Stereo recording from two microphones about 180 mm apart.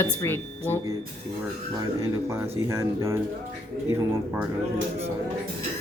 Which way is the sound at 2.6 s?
15° right (ahead or behind).